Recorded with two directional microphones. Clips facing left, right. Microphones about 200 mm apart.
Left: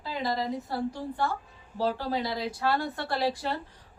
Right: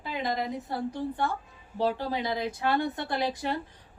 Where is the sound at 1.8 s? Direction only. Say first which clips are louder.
Even; 20° right (ahead or behind).